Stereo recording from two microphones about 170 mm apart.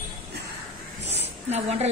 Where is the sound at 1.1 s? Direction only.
40° right (ahead or behind).